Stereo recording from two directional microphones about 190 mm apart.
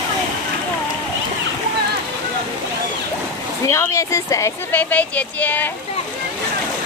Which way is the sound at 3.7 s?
15° left (ahead or behind).